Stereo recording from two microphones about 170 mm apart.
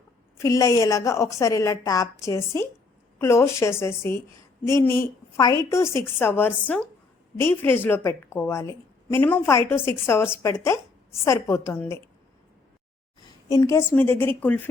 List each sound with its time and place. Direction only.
0.3 s a woman's voice: 20° left (ahead or behind)
13.5 s a woman's voice: 15° left (ahead or behind)